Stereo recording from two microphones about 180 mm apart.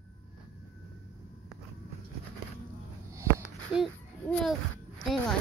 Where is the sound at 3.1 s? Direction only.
15° right (ahead or behind).